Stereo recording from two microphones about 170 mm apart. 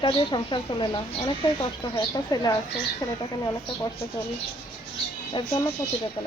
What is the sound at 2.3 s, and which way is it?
Speech, 20° left (ahead or behind).